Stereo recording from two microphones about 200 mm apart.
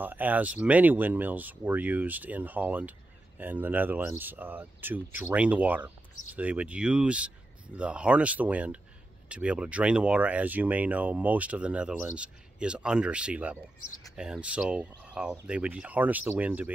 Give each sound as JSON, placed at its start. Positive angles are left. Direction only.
{"t": 0.0, "sound": "speech", "side_deg": -10}